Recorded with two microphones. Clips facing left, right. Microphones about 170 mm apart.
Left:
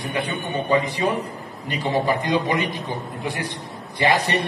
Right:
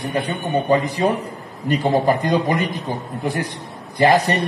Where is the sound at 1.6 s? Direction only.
45° right (ahead or behind).